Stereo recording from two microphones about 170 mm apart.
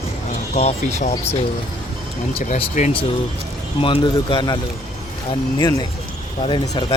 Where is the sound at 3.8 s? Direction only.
30° left (ahead or behind).